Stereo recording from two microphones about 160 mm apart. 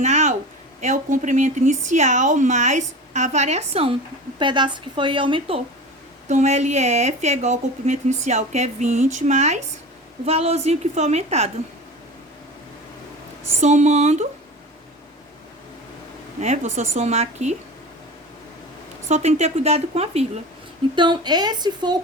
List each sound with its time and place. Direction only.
0.0 s a sound: 45° right (ahead or behind)
0.8 s speech: 50° right (ahead or behind)
4.4 s a woman's voice: 30° right (ahead or behind)
6.2 s a woman's voice: 45° right (ahead or behind)
13.6 s speech: 45° right (ahead or behind)
16.4 s speech: 45° right (ahead or behind)
19.0 s speech: 45° right (ahead or behind)
20.9 s a woman's voice: 30° right (ahead or behind)